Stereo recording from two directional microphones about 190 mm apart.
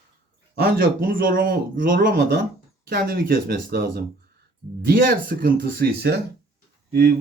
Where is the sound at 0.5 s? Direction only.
55° right (ahead or behind).